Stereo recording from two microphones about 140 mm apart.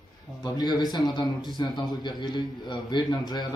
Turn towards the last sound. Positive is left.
turn(degrees=30)  # may be behind; listen again after turning